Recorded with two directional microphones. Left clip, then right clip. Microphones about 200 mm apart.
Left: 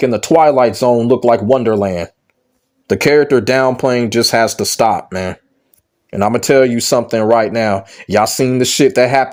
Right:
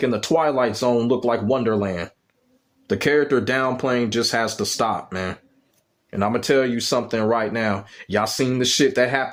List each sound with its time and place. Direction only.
0.0 s speech: 30° left (ahead or behind)